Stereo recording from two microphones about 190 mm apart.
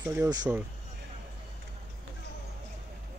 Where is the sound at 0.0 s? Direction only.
15° right (ahead or behind).